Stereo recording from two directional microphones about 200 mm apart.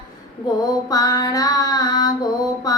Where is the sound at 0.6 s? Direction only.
20° left (ahead or behind).